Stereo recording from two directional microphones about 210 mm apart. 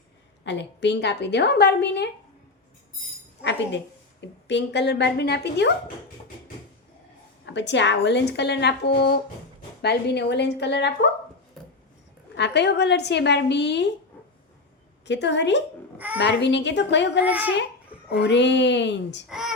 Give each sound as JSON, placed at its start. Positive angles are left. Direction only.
{"t": 0.4, "sound": "a woman's voice", "side_deg": 55}
{"t": 4.4, "sound": "a woman's voice", "side_deg": 55}
{"t": 7.4, "sound": "a woman's voice", "side_deg": 55}
{"t": 12.4, "sound": "a woman's voice", "side_deg": 55}
{"t": 15.0, "sound": "a woman's voice", "side_deg": 55}
{"t": 17.2, "sound": "a child's voice", "side_deg": -5}
{"t": 18.1, "sound": "a woman's voice", "side_deg": 55}
{"t": 19.3, "sound": "speech", "side_deg": 0}